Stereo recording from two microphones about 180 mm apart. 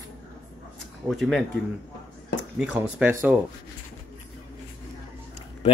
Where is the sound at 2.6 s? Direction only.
10° right (ahead or behind).